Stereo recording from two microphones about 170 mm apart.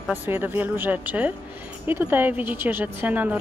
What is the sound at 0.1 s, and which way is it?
A woman's voice, 10° right (ahead or behind).